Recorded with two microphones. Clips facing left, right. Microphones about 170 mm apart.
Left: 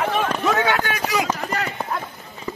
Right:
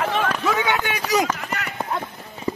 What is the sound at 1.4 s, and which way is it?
Run, 35° left (ahead or behind).